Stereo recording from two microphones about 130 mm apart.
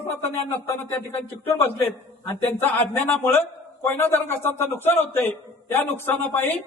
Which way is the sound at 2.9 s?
20° left (ahead or behind).